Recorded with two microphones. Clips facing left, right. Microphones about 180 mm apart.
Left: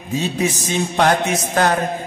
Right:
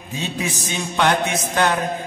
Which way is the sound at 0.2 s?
35° left (ahead or behind).